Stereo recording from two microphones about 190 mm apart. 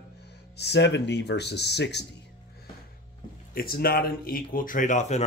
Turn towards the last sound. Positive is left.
turn(degrees=40)  # may be behind; listen again after turning